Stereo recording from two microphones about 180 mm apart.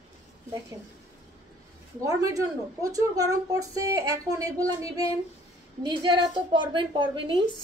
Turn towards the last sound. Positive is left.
turn(degrees=-25)  # may be behind; listen again after turning